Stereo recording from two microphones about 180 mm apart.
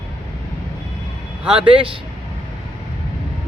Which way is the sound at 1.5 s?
30° right (ahead or behind).